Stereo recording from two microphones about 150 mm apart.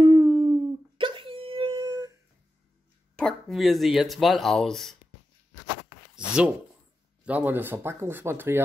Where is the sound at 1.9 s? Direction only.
25° right (ahead or behind).